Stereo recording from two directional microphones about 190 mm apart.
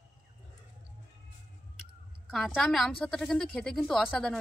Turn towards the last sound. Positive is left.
turn(degrees=0)  # may be behind; listen again after turning